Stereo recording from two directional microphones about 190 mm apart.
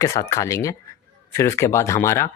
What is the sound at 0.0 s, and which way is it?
Speech, 15° left (ahead or behind).